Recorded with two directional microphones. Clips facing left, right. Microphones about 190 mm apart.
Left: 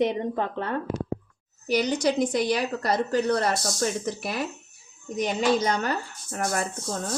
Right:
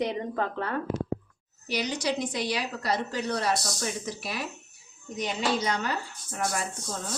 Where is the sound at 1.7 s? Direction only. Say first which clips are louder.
Left 6 dB; 50° left (ahead or behind).